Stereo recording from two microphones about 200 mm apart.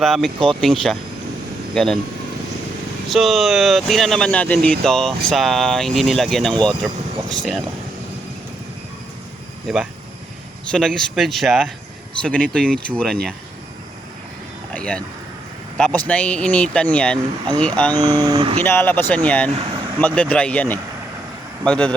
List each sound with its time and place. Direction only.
0.0 s speech: centre (ahead or behind)
3.1 s speech: centre (ahead or behind)
9.6 s speech: centre (ahead or behind)
14.7 s a sound: 5° left (ahead or behind)
16.0 s speech: 5° left (ahead or behind)
18.0 s speech: 20° right (ahead or behind)
18.6 s speech: 10° left (ahead or behind)